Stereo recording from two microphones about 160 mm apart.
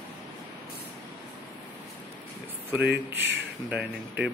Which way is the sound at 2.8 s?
90° right.